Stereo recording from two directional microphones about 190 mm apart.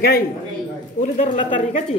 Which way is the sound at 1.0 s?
40° left (ahead or behind).